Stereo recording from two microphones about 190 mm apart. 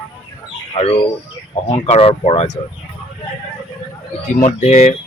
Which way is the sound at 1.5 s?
30° left (ahead or behind).